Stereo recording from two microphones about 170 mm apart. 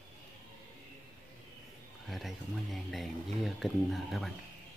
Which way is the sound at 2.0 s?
Centre (ahead or behind).